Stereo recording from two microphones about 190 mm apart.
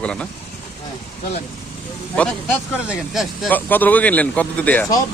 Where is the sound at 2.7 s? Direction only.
5° right (ahead or behind).